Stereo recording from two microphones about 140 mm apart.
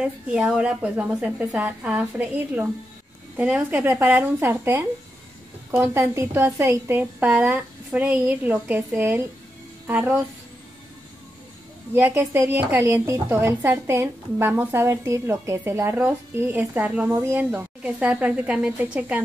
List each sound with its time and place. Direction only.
0.0 s a woman's voice: 5° right (ahead or behind)
3.9 s a woman's voice: 20° right (ahead or behind)
11.9 s a woman's voice: 20° right (ahead or behind)